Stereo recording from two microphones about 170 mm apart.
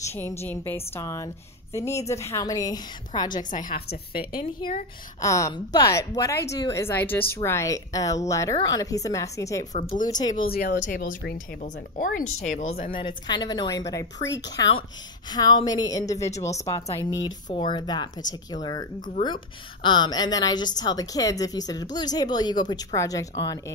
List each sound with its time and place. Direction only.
0.0 s a woman's voice: 15° left (ahead or behind)
3.5 s a woman's voice: 55° left (ahead or behind)
5.2 s a woman's voice: 20° left (ahead or behind)
9.8 s speech: 40° left (ahead or behind)
10.0 s a woman's voice: 25° left (ahead or behind)
10.3 s speech: 60° left (ahead or behind); by 12.9 s 45° left (ahead or behind)
12.9 s a woman's voice: 25° left (ahead or behind)
14.6 s a woman's voice: 30° left (ahead or behind)